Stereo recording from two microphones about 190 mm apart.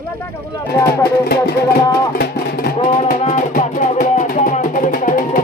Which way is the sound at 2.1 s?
55° left (ahead or behind).